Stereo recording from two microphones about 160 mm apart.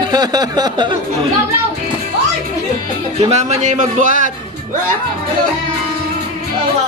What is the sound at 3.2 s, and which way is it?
A man's voice, 45° right (ahead or behind).